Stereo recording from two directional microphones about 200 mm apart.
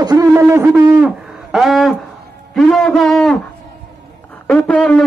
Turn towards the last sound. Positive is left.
turn(degrees=5)  # may be behind; listen again after turning